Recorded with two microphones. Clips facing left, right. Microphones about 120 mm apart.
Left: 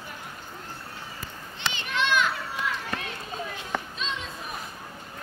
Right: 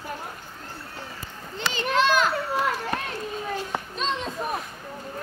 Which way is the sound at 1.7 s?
40° right (ahead or behind).